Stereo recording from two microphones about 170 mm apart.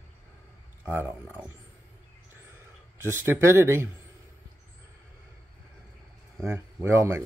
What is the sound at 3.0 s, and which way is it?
Speech, 15° right (ahead or behind).